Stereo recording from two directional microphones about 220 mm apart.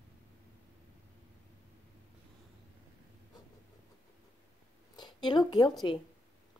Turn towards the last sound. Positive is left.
turn(degrees=20)  # may be behind; listen again after turning